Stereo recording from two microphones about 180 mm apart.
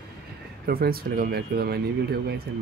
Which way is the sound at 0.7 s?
55° right (ahead or behind).